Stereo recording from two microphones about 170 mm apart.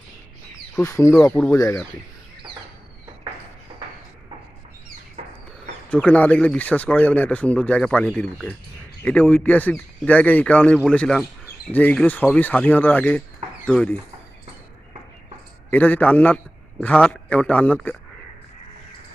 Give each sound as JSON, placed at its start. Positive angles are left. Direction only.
{"t": 0.8, "sound": "speech", "side_deg": 15}
{"t": 5.9, "sound": "speech", "side_deg": 10}
{"t": 15.7, "sound": "speech", "side_deg": 10}